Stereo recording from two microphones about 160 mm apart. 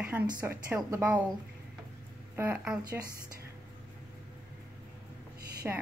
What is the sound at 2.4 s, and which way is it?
Speech, 10° right (ahead or behind).